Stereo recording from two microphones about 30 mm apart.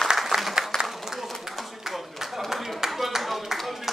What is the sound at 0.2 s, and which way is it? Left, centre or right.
Applause, centre.